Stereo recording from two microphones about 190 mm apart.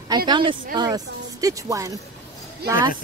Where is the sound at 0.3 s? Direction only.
25° right (ahead or behind).